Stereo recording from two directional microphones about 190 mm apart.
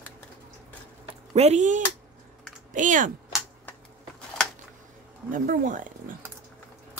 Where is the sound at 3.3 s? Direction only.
Centre (ahead or behind).